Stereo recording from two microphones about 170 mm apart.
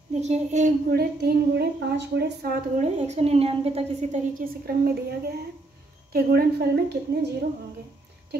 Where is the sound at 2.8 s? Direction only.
40° right (ahead or behind).